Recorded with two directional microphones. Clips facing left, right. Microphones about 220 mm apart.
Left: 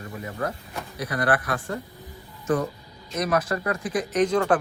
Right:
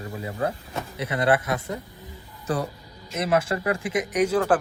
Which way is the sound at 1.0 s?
25° right (ahead or behind).